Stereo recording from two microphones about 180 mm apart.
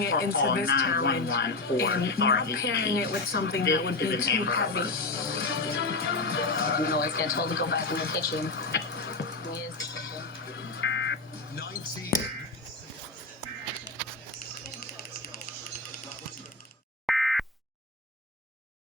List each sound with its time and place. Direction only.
0.0 s speech: 70° left (ahead or behind)
10.8 s music: 75° left (ahead or behind)
17.1 s busy signal: centre (ahead or behind)